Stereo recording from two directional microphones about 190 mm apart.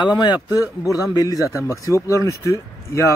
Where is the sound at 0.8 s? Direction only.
15° left (ahead or behind).